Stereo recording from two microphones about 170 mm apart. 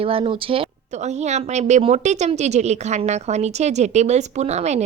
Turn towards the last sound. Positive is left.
turn(degrees=-40)  # may be behind; listen again after turning